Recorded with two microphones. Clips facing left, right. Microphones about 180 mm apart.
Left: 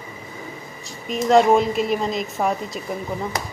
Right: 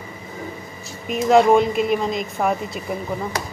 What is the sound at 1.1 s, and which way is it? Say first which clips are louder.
Speech: right 1 dB; centre (ahead or behind).